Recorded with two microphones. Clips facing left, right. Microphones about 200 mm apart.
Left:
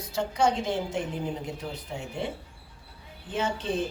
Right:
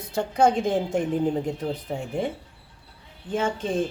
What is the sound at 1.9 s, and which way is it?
Speech, 45° right (ahead or behind).